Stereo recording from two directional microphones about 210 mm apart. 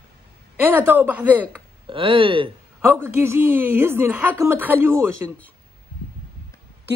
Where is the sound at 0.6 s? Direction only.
10° right (ahead or behind).